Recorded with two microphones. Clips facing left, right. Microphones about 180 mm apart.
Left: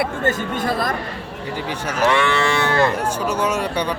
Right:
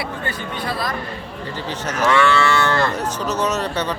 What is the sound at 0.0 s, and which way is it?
Speech, 45° left (ahead or behind).